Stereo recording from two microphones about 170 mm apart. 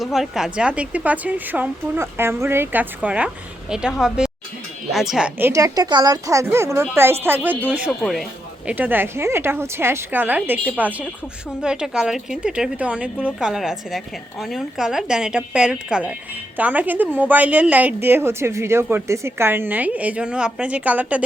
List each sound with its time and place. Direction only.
0.0 s a woman's voice: centre (ahead or behind)
5.5 s a woman's voice: 20° right (ahead or behind); by 8.7 s centre (ahead or behind)
8.7 s a woman's voice: 10° right (ahead or behind)